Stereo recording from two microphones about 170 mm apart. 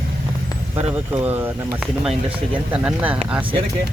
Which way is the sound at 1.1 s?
10° right (ahead or behind).